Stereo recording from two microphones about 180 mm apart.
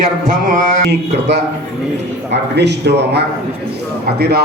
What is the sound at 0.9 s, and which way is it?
A man's voice, 70° right (ahead or behind).